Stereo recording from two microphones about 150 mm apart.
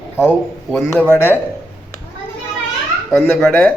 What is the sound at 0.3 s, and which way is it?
A man's voice, 10° left (ahead or behind).